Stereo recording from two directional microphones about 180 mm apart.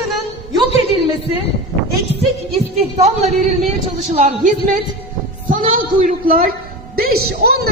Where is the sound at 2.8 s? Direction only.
35° right (ahead or behind).